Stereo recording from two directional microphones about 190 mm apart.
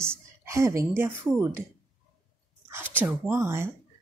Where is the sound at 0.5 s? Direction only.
15° right (ahead or behind).